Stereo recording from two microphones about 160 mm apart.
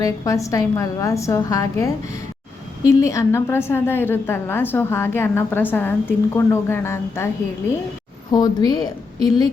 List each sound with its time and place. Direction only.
0.0 s a woman's voice: 20° left (ahead or behind)
8.3 s a woman's voice: 25° left (ahead or behind)